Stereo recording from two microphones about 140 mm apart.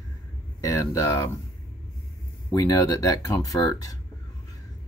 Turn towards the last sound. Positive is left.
turn(degrees=25)  # may be behind; listen again after turning